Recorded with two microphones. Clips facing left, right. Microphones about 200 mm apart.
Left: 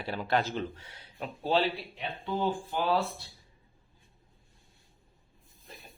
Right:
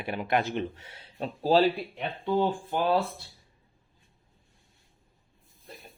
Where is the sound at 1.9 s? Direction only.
55° right (ahead or behind).